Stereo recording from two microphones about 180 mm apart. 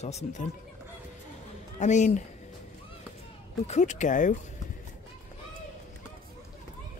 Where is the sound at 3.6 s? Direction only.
40° left (ahead or behind).